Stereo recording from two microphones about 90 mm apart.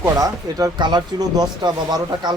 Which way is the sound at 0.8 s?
55° right (ahead or behind).